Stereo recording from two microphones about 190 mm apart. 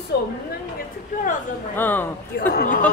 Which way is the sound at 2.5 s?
45° left (ahead or behind).